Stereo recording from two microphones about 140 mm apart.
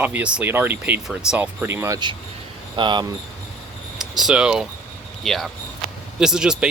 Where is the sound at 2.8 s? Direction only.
35° right (ahead or behind).